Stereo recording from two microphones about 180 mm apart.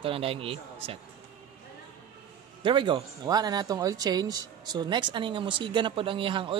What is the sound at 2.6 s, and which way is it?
Speech, 25° right (ahead or behind).